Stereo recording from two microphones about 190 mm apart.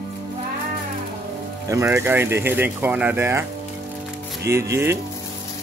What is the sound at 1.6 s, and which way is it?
Speech, 15° right (ahead or behind).